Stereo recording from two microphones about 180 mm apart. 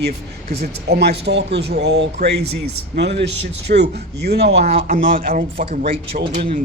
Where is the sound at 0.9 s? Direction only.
65° right (ahead or behind).